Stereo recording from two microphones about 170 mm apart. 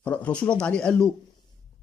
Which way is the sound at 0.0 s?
10° left (ahead or behind).